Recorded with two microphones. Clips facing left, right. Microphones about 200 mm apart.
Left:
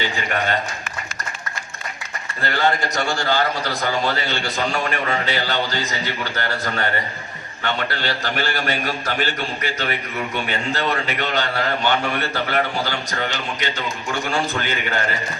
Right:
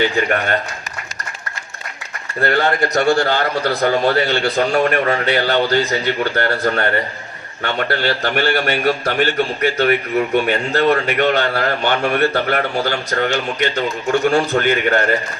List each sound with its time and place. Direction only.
0.0 s a man's voice: 50° right (ahead or behind)
2.4 s a man's voice: 55° right (ahead or behind)